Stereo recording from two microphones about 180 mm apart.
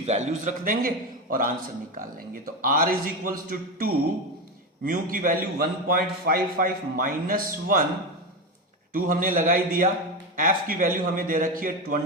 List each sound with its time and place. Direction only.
0.0 s a man's voice: 40° right (ahead or behind)
8.9 s a man's voice: 50° right (ahead or behind)